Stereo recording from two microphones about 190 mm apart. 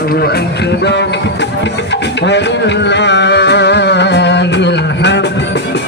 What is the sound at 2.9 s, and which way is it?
Music, 65° left (ahead or behind).